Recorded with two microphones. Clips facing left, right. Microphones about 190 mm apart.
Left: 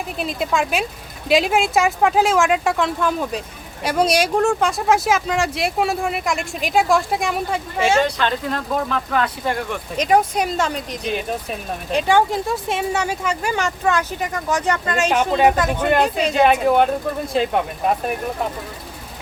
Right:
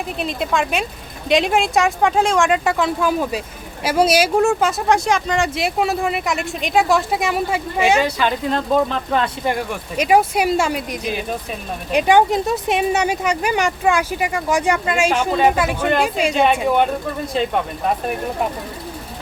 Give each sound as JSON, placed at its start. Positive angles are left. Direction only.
{"t": 0.2, "sound": "speech", "side_deg": 0}
{"t": 7.8, "sound": "speech", "side_deg": -15}
{"t": 9.5, "sound": "speech", "side_deg": -10}
{"t": 16.3, "sound": "speech", "side_deg": 5}